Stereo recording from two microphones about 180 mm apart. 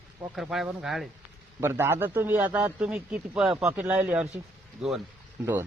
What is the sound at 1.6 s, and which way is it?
A man's voice, 15° right (ahead or behind).